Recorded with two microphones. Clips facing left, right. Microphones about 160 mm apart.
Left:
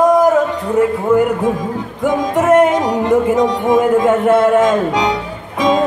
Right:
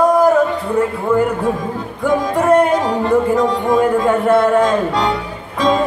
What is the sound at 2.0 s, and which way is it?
Music, 20° left (ahead or behind).